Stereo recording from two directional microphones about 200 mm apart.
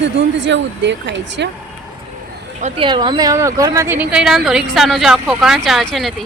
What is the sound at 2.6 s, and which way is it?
Speech, 25° right (ahead or behind).